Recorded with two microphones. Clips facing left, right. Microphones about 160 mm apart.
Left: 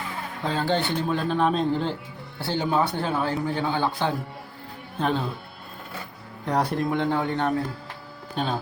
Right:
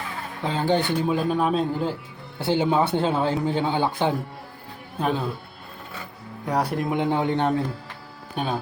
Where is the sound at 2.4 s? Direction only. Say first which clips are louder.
Right 3 dB; 20° right (ahead or behind).